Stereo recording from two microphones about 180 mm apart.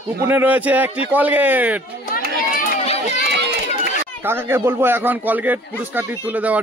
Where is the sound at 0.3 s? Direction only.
10° right (ahead or behind).